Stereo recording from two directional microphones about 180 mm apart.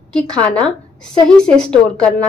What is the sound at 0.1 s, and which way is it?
A woman's voice, 5° left (ahead or behind).